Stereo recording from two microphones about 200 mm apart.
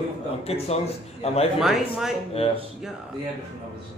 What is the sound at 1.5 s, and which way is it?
Speech, centre (ahead or behind).